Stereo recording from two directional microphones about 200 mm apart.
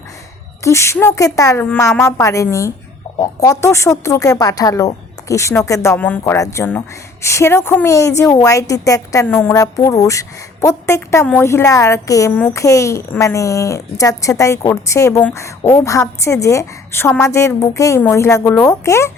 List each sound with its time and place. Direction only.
0.6 s speech: 15° left (ahead or behind)